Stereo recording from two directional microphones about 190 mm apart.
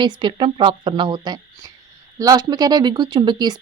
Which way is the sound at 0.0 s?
25° right (ahead or behind).